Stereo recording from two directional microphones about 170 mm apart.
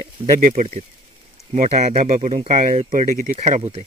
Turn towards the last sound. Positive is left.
turn(degrees=-40)  # may be behind; listen again after turning